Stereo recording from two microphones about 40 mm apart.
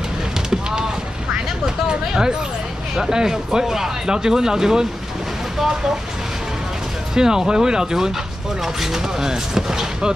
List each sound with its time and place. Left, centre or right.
1.9 s speech: centre
7.2 s speech: centre